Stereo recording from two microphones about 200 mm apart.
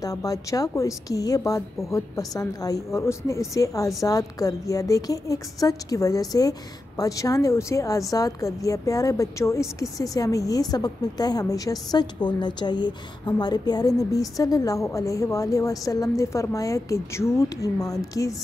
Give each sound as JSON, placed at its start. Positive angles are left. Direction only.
{"t": 0.0, "sound": "a woman's voice", "side_deg": 15}